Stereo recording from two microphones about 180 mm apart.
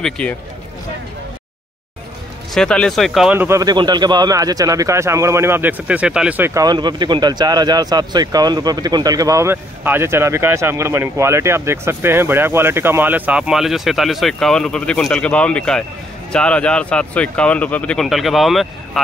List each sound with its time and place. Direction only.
0.0 s speech: 5° left (ahead or behind)
2.5 s speech: 5° left (ahead or behind)
3.3 s speech: 15° right (ahead or behind); by 18.7 s centre (ahead or behind)